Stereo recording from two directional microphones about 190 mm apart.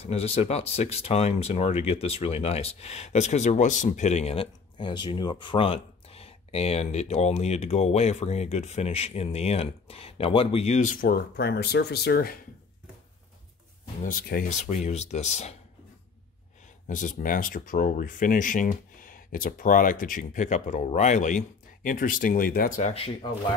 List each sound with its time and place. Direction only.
0.0 s speech: 35° left (ahead or behind); by 12.4 s 55° left (ahead or behind)
14.0 s speech: 45° left (ahead or behind)
16.8 s speech: 40° left (ahead or behind)